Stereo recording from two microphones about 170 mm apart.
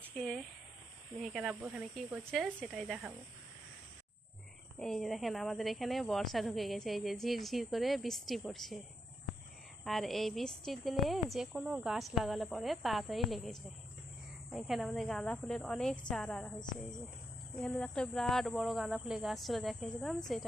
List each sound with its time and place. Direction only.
0.0 s speech: 5° left (ahead or behind)
4.8 s speech: centre (ahead or behind)
9.8 s speech: centre (ahead or behind)
17.6 s speech: 5° left (ahead or behind)